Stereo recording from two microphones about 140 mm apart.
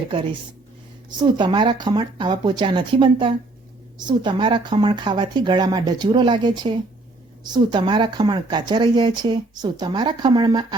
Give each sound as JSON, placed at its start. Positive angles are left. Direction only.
{"t": 1.2, "sound": "speech", "side_deg": -35}